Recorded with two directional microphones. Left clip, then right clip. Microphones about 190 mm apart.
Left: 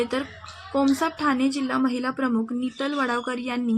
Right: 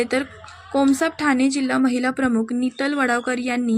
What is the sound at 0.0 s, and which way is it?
A woman's voice, 20° right (ahead or behind).